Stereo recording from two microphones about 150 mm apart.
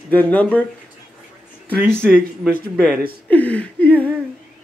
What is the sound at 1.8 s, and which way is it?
Speech, 15° right (ahead or behind).